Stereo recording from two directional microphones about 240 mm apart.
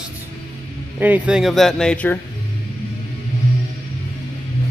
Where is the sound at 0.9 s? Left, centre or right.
Centre.